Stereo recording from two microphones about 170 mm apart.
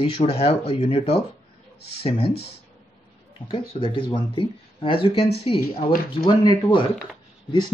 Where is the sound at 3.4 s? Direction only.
30° left (ahead or behind).